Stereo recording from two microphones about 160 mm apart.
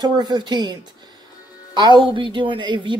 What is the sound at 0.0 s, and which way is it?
Speech, 25° right (ahead or behind).